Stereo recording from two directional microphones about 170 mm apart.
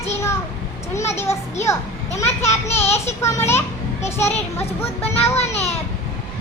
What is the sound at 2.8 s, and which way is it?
Speech, 40° left (ahead or behind).